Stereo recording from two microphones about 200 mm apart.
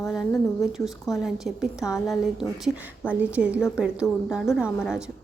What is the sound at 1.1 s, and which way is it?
Speech, centre (ahead or behind).